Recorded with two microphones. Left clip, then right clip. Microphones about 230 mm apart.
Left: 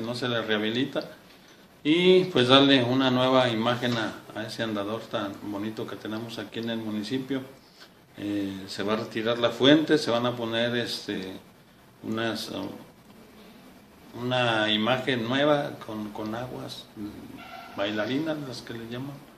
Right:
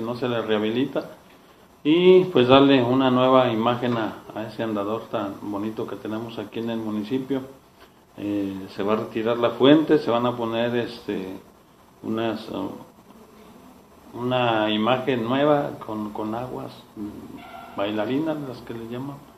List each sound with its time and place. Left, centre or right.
0.0 s a man's voice: left
14.1 s a man's voice: left
17.7 s a man's voice: left